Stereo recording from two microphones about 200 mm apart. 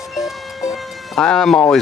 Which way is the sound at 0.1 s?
Centre (ahead or behind).